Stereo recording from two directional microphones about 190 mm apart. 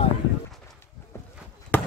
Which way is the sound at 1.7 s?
10° left (ahead or behind).